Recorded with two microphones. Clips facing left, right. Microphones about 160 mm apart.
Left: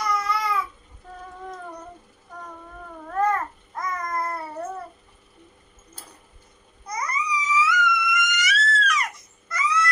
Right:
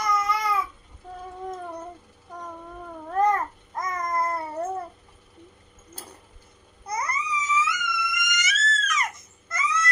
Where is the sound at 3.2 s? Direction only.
20° right (ahead or behind).